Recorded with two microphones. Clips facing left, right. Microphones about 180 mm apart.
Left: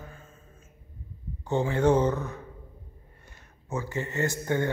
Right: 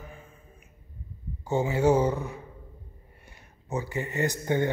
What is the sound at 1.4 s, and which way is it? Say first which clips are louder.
Speech: even; 10° right (ahead or behind).